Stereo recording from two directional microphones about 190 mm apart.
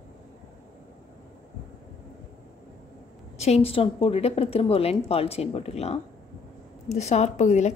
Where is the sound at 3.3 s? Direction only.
35° left (ahead or behind).